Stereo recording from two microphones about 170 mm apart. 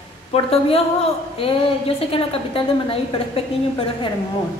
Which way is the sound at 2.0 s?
35° left (ahead or behind).